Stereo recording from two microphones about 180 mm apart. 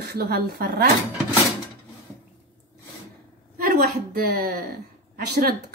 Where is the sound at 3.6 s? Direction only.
55° right (ahead or behind).